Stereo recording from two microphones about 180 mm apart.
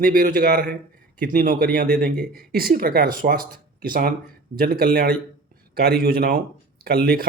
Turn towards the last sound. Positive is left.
turn(degrees=-60)  # may be behind; listen again after turning